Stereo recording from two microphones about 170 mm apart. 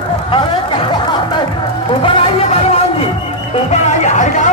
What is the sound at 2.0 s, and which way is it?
Music, 30° left (ahead or behind).